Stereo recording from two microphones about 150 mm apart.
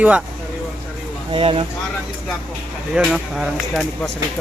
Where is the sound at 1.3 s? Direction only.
35° right (ahead or behind).